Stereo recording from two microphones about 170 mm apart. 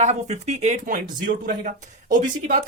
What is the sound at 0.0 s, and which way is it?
Speech, 40° right (ahead or behind).